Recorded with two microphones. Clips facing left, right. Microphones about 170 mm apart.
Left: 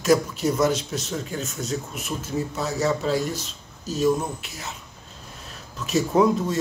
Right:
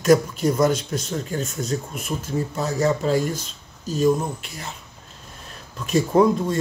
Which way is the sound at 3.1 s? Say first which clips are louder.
Right 3 dB; 50° right (ahead or behind).